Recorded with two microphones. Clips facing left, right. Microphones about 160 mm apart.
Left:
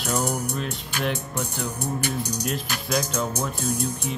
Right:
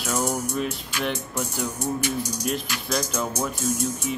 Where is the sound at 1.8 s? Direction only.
60° left (ahead or behind).